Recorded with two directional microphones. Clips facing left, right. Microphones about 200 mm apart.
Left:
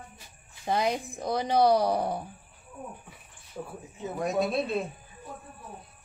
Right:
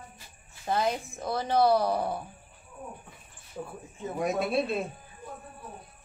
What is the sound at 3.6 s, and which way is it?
Speech, centre (ahead or behind).